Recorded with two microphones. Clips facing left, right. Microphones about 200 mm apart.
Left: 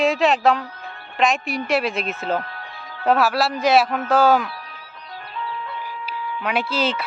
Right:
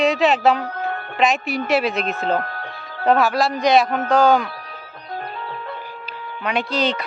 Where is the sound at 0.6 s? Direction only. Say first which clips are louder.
Right 10 dB; 65° right (ahead or behind).